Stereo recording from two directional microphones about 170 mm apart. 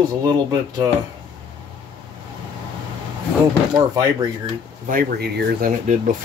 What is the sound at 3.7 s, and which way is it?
Speech, 20° right (ahead or behind).